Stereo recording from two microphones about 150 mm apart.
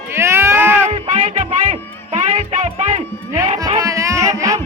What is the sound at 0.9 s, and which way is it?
Music, 45° right (ahead or behind).